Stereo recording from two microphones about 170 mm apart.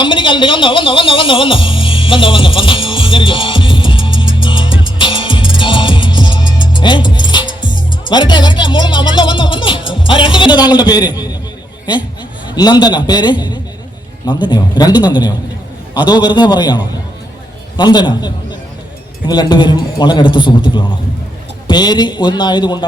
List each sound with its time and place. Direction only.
0.0 s music: 30° left (ahead or behind)
7.9 s speech: 25° left (ahead or behind)
12.5 s speech: 25° left (ahead or behind)
19.3 s speech: 25° left (ahead or behind)